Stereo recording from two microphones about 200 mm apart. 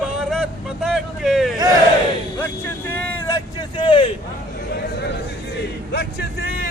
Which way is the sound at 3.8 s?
25° left (ahead or behind).